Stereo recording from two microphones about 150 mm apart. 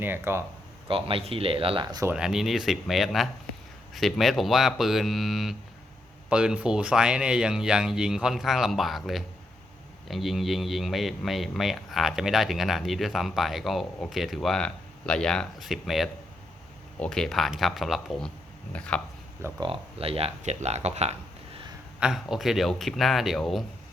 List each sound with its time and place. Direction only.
0.0 s speech: 15° right (ahead or behind)
0.9 s speech: 40° right (ahead or behind)
2.0 s a man's voice: 5° right (ahead or behind)
19.6 s speech: 40° right (ahead or behind)
22.0 s a man's voice: 5° right (ahead or behind)